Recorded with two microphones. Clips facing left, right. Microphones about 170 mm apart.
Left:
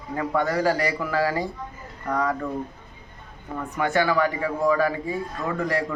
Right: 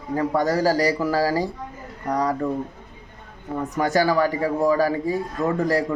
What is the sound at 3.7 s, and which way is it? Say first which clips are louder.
A man's voice: right 2 dB; 40° right (ahead or behind).